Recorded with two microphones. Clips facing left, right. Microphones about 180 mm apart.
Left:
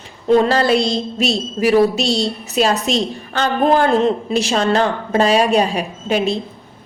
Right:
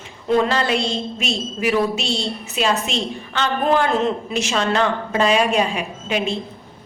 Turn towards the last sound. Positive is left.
turn(degrees=35)  # may be behind; listen again after turning